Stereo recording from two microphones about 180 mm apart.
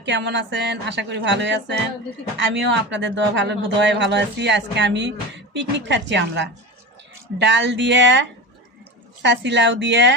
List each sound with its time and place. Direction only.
0.0 s speech: 80° right